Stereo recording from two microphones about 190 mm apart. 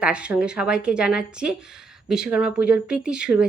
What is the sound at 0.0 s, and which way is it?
Speech, 5° right (ahead or behind).